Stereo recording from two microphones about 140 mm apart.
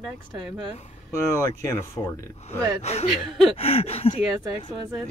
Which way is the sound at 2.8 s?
50° left (ahead or behind).